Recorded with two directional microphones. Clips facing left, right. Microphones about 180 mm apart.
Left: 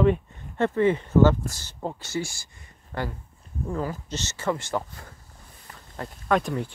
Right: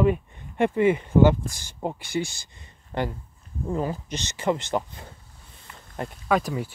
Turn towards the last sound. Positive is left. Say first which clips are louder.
# even
turn(degrees=-5)  # may be behind; listen again after turning